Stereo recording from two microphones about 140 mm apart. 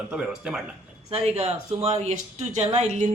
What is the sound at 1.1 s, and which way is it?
Speech, 45° right (ahead or behind).